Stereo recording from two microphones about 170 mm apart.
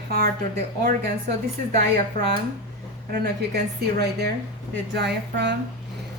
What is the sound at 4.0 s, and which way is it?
Speech, 75° right (ahead or behind).